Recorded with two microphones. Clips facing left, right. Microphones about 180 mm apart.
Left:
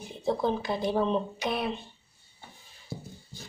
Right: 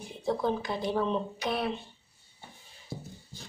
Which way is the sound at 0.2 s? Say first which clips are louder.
Left 1 dB; 25° left (ahead or behind).